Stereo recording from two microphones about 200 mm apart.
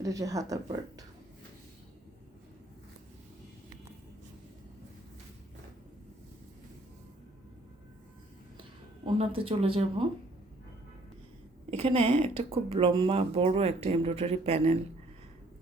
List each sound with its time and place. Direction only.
0.0 s speech: 15° right (ahead or behind)
9.0 s speech: 30° right (ahead or behind)
11.7 s speech: 30° right (ahead or behind)